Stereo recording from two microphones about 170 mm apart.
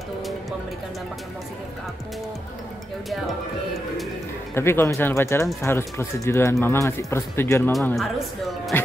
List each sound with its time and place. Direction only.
4.6 s speech: 15° left (ahead or behind)
7.9 s a woman's voice: centre (ahead or behind)